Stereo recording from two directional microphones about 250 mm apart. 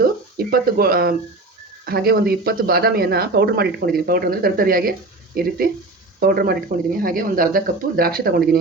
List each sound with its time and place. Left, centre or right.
0.3 s speech: right